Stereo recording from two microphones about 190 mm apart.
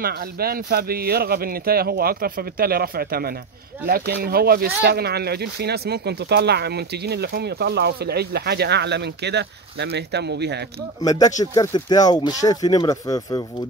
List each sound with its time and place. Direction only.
0.0 s speech: 50° right (ahead or behind)
11.0 s speech: 20° left (ahead or behind)